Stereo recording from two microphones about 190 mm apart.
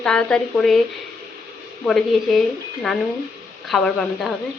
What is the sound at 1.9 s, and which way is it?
Speech, centre (ahead or behind).